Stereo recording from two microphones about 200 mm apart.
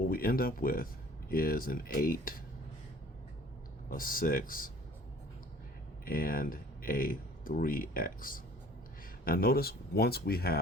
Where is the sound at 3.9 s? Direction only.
45° left (ahead or behind).